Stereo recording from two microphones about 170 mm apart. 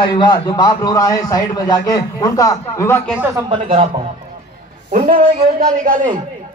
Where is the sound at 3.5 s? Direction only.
30° right (ahead or behind).